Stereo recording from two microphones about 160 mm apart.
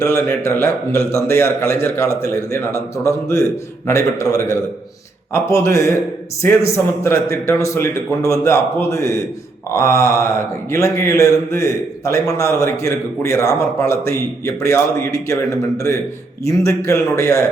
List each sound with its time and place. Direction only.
0.0 s a man's voice: 15° left (ahead or behind)
16.4 s a man's voice: 20° left (ahead or behind)